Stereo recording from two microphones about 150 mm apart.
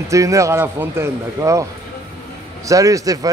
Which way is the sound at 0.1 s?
20° right (ahead or behind).